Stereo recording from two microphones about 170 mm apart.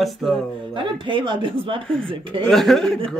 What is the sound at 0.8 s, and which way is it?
Speech, 30° right (ahead or behind).